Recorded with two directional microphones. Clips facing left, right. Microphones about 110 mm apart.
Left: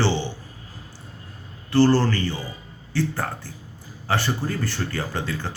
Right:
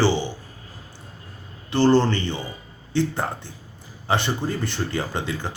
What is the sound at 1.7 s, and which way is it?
Speech, 20° right (ahead or behind).